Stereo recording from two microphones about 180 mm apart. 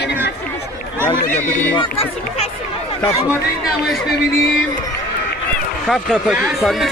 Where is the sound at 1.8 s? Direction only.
30° left (ahead or behind).